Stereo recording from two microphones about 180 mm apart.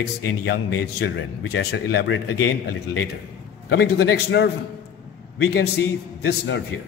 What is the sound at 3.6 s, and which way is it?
Speech, 65° left (ahead or behind).